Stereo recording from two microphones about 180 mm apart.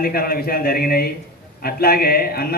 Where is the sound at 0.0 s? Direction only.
55° left (ahead or behind).